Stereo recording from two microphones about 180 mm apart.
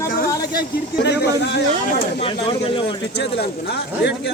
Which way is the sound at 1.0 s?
70° left (ahead or behind).